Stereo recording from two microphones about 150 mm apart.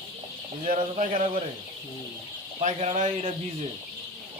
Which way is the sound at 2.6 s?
45° right (ahead or behind).